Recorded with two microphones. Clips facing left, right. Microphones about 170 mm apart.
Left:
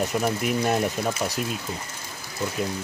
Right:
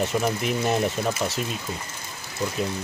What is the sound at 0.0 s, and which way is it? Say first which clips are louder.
Speech: even; 5° left (ahead or behind).